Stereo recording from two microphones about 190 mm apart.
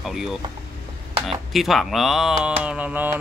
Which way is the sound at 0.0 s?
Centre (ahead or behind).